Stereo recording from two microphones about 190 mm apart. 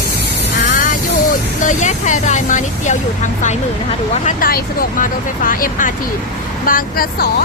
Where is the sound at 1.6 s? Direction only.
40° left (ahead or behind).